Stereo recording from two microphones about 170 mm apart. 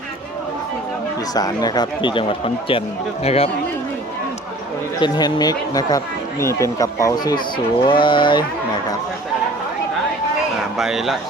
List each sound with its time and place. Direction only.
1.3 s speech: 20° left (ahead or behind)
4.9 s speech: 25° left (ahead or behind)
10.8 s speech: centre (ahead or behind)